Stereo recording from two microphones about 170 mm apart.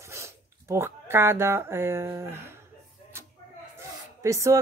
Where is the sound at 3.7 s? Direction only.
15° right (ahead or behind).